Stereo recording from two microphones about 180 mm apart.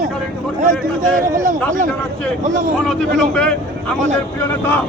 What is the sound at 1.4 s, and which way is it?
Speech, 45° right (ahead or behind).